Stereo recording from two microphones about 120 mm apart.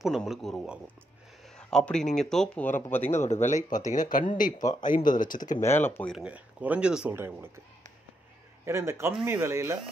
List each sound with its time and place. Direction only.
0.0 s speech: centre (ahead or behind)
1.6 s speech: 5° left (ahead or behind)
3.3 s speech: 75° left (ahead or behind); by 4.3 s 90° left
4.6 s a man's voice: 35° left (ahead or behind)
4.8 s speech: 90° left
5.6 s speech: 20° left (ahead or behind)
6.1 s speech: 10° right (ahead or behind)
7.2 s a man's voice: 20° right (ahead or behind)
8.6 s a man's voice: 20° right (ahead or behind)